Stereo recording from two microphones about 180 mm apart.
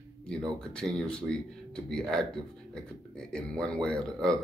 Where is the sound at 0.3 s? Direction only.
5° left (ahead or behind).